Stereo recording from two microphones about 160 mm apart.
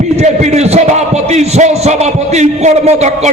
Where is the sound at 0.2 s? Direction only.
45° right (ahead or behind).